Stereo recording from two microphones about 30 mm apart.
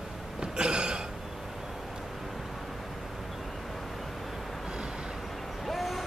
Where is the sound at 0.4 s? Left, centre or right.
Right.